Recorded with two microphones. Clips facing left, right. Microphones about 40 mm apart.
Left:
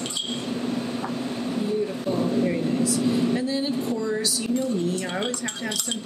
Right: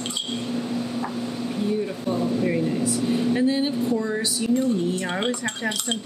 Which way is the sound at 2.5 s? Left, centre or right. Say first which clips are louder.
Even; centre.